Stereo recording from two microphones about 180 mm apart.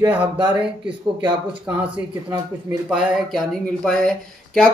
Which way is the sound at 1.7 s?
20° right (ahead or behind).